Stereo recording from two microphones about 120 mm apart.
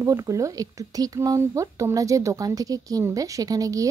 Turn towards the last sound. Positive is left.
turn(degrees=-30)  # may be behind; listen again after turning